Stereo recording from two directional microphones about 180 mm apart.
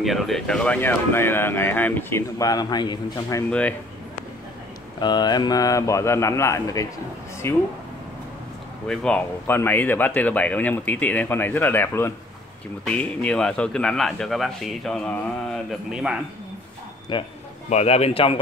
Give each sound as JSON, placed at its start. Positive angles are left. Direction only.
{"t": 0.0, "sound": "speech", "side_deg": 0}
{"t": 3.4, "sound": "speech", "side_deg": 5}
{"t": 5.0, "sound": "speech", "side_deg": 25}
{"t": 8.8, "sound": "a man's voice", "side_deg": 5}
{"t": 17.1, "sound": "a man's voice", "side_deg": 25}
{"t": 17.6, "sound": "a man's voice", "side_deg": 35}